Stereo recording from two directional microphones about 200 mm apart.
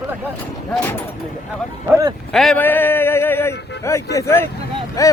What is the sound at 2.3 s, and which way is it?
A man's voice, 5° left (ahead or behind).